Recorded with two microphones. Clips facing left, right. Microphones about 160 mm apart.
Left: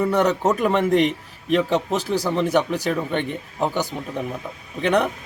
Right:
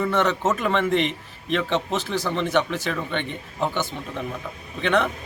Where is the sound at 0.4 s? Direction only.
10° left (ahead or behind).